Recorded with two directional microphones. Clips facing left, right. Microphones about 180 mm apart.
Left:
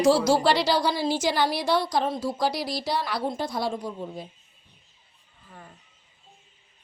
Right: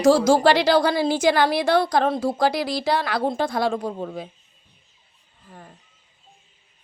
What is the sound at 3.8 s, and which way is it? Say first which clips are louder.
Speech: right 5 dB; 60° right (ahead or behind).